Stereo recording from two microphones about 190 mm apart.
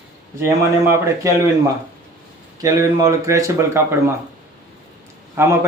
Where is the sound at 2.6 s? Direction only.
20° right (ahead or behind).